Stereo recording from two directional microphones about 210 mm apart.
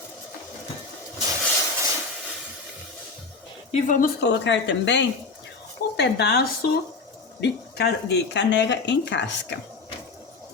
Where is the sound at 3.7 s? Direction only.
35° left (ahead or behind).